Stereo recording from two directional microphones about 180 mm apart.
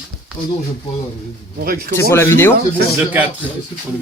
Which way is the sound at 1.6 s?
55° right (ahead or behind).